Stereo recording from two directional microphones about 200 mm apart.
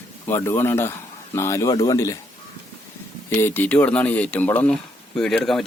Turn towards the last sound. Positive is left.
turn(degrees=0)  # may be behind; listen again after turning